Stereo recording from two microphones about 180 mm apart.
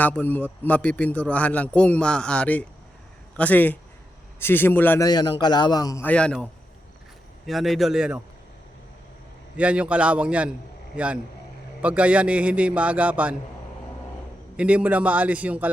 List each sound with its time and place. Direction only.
0.0 s a man's voice: 10° left (ahead or behind)
5.0 s a man's voice: 25° left (ahead or behind); by 8.2 s 5° right (ahead or behind)
9.6 s a man's voice: 5° right (ahead or behind)
14.5 s a man's voice: 5° right (ahead or behind)